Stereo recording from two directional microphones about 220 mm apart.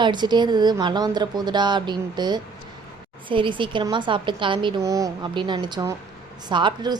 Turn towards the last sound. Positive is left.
turn(degrees=-20)  # may be behind; listen again after turning